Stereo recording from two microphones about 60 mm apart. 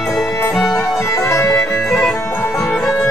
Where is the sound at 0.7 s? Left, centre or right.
Left.